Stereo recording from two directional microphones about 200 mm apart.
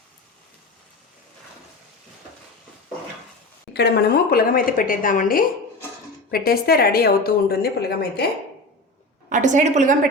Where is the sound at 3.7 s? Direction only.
55° left (ahead or behind).